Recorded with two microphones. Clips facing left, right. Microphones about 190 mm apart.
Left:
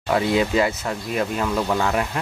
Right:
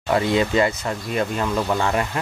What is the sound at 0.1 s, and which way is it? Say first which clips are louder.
Speech: even; 5° left (ahead or behind).